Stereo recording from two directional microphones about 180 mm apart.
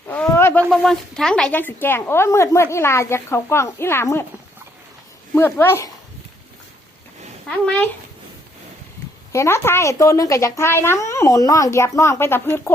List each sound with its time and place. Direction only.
0.1 s a sound: 10° left (ahead or behind)
0.7 s a woman's voice: centre (ahead or behind)
5.3 s a woman's voice: 15° left (ahead or behind)
7.4 s a child's voice: 5° left (ahead or behind)
9.3 s a woman's voice: 15° left (ahead or behind)